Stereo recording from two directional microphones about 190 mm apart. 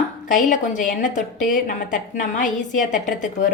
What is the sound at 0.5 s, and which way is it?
A woman's voice, 40° left (ahead or behind).